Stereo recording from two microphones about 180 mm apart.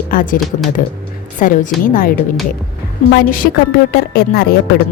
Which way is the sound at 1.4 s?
50° left (ahead or behind).